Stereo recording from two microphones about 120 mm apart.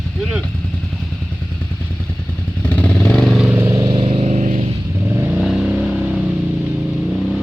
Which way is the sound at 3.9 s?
50° right (ahead or behind).